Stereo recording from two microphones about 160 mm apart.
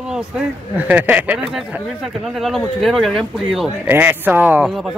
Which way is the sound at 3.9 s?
15° right (ahead or behind).